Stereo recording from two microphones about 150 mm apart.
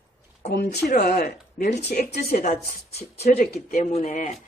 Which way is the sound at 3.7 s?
45° left (ahead or behind).